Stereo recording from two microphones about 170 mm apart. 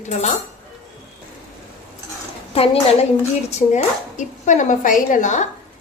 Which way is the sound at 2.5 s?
35° left (ahead or behind).